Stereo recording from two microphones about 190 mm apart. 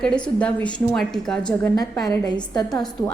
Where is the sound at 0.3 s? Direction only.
5° left (ahead or behind).